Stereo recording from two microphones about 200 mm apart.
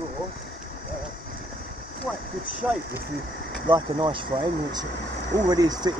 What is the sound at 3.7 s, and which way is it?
Speech, 25° right (ahead or behind).